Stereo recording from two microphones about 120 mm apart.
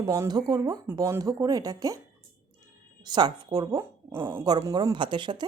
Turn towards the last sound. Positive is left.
turn(degrees=-40)  # may be behind; listen again after turning